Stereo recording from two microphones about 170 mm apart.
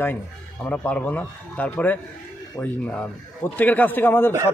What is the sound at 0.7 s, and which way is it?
A man's voice, 10° left (ahead or behind).